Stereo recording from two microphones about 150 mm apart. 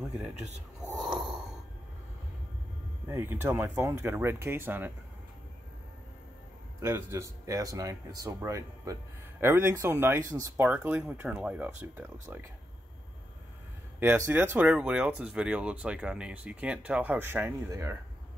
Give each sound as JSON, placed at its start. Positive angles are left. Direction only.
{"t": 0.9, "sound": "a sound", "side_deg": -5}
{"t": 3.1, "sound": "speech", "side_deg": -15}
{"t": 6.8, "sound": "speech", "side_deg": -20}
{"t": 13.9, "sound": "speech", "side_deg": -15}